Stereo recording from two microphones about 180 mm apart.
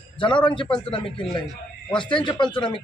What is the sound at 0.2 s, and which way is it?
A man's voice, 25° left (ahead or behind).